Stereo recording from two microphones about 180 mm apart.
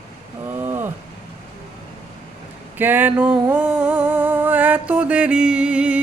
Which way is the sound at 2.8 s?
10° right (ahead or behind).